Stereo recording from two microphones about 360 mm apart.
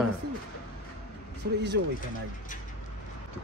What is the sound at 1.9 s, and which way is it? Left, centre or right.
Speech, left.